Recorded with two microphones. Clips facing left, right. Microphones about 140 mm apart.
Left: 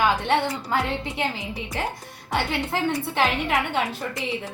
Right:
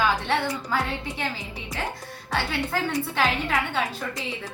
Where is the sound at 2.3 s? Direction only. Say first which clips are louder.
Left 2 dB; 20° left (ahead or behind).